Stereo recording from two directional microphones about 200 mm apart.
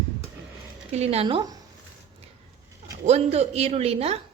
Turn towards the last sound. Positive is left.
turn(degrees=-30)  # may be behind; listen again after turning